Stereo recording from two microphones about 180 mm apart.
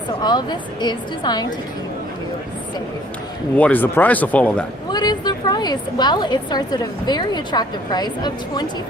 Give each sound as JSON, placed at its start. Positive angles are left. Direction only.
{"t": 0.2, "sound": "a woman's voice", "side_deg": 25}
{"t": 3.6, "sound": "speech", "side_deg": 10}
{"t": 4.9, "sound": "a woman's voice", "side_deg": 25}